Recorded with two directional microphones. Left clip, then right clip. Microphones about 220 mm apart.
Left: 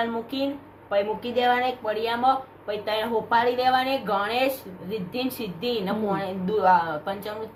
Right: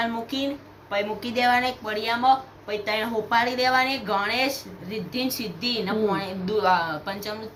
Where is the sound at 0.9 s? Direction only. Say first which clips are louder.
Left 2 dB; 10° left (ahead or behind).